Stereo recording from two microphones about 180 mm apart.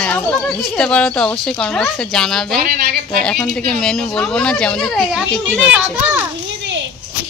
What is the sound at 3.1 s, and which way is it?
Speech, 5° left (ahead or behind).